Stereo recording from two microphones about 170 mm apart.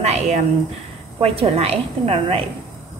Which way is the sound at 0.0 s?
40° right (ahead or behind).